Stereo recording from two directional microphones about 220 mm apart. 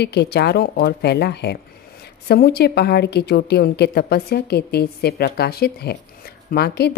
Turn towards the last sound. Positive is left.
turn(degrees=45)  # may be behind; listen again after turning